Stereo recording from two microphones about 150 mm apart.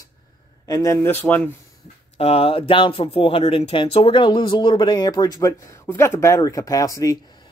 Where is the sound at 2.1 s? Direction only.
40° left (ahead or behind).